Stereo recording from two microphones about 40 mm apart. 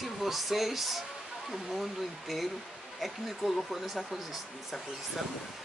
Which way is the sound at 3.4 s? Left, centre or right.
Centre.